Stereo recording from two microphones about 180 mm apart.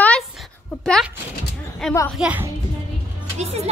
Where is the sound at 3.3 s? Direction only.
35° right (ahead or behind).